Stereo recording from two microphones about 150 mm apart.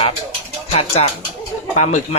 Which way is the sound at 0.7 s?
45° left (ahead or behind).